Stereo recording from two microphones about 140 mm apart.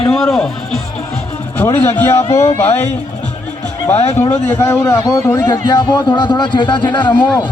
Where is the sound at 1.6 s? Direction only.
25° left (ahead or behind).